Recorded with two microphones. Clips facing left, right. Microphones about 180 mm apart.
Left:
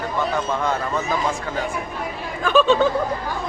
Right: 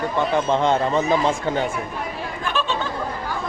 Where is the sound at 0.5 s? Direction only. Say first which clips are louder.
Right 4 dB; 25° right (ahead or behind).